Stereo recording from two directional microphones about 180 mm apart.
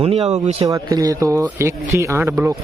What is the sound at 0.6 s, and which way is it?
Speech, 20° right (ahead or behind).